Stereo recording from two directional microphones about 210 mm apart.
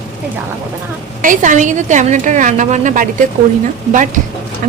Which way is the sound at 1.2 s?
40° right (ahead or behind).